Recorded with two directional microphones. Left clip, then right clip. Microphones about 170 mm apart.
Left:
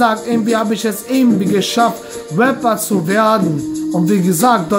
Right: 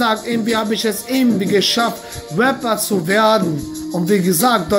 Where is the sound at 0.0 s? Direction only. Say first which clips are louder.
Left 3 dB; 20° left (ahead or behind).